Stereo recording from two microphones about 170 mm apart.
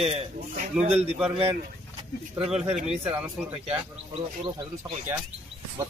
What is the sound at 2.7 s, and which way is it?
Speech, 40° right (ahead or behind).